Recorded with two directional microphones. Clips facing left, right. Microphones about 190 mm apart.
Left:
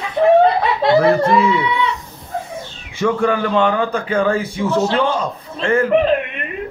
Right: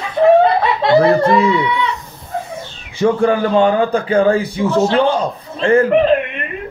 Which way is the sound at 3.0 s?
35° right (ahead or behind).